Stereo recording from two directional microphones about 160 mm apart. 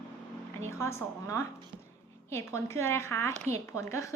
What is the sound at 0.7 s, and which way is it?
A woman's voice, 15° left (ahead or behind).